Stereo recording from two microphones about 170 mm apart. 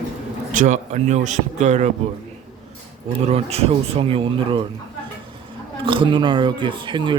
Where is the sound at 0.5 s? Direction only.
45° right (ahead or behind).